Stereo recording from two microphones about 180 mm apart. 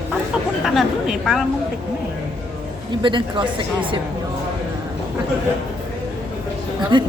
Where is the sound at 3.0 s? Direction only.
25° right (ahead or behind).